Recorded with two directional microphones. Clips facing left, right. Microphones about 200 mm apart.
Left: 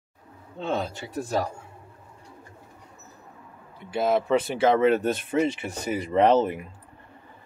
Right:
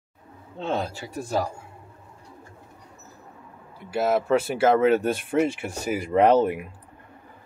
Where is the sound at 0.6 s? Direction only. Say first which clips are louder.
Right 1 dB; centre (ahead or behind).